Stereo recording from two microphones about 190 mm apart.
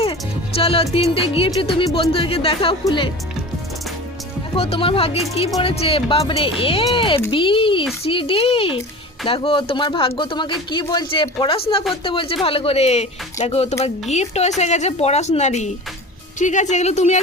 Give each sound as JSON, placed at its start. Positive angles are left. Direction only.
{"t": 0.0, "sound": "music", "side_deg": 30}
{"t": 1.1, "sound": "speech", "side_deg": 30}
{"t": 4.5, "sound": "speech", "side_deg": 30}